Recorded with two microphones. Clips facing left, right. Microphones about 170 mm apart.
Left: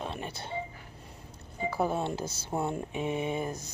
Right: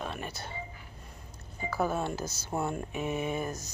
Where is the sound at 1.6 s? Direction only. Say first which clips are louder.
Left 1 dB; 25° left (ahead or behind).